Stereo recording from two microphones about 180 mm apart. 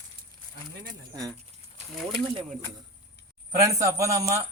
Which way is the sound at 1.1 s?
20° right (ahead or behind).